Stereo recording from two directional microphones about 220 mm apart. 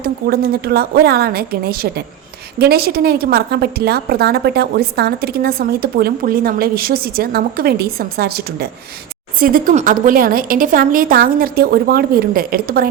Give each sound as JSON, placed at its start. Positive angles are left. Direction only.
{"t": 0.0, "sound": "a woman's voice", "side_deg": -45}